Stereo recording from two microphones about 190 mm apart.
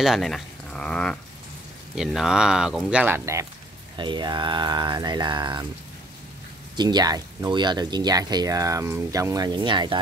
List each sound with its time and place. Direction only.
0.0 s a sound: centre (ahead or behind)
2.0 s speech: centre (ahead or behind)
3.9 s speech: 25° right (ahead or behind)
6.8 s speech: 20° right (ahead or behind)